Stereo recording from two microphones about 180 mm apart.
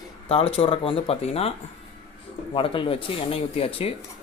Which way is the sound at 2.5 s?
30° left (ahead or behind).